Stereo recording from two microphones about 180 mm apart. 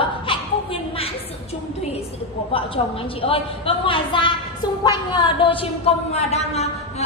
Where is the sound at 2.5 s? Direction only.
30° left (ahead or behind).